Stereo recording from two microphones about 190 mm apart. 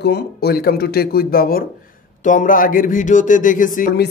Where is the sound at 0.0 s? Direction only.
60° left (ahead or behind).